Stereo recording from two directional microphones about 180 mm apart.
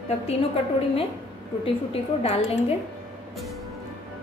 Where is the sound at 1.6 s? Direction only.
35° left (ahead or behind).